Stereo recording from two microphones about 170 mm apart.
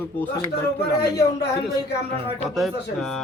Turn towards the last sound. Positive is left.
turn(degrees=0)  # may be behind; listen again after turning